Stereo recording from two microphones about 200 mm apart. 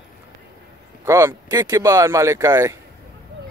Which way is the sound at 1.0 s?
15° right (ahead or behind).